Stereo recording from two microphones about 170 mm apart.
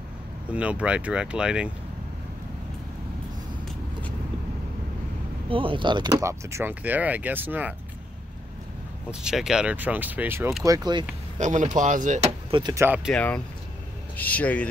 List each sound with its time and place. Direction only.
0.5 s speech: 5° right (ahead or behind)
5.5 s speech: 30° right (ahead or behind); by 7.7 s 10° right (ahead or behind)
9.1 s speech: 5° right (ahead or behind); by 11.1 s 25° right (ahead or behind)
11.3 s speech: 45° right (ahead or behind)
12.4 s speech: 30° right (ahead or behind)
12.7 s speech: 10° right (ahead or behind)
13.1 s speech: 10° left (ahead or behind)